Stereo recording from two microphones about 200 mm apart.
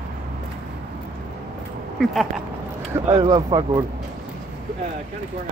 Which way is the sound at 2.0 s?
Centre (ahead or behind).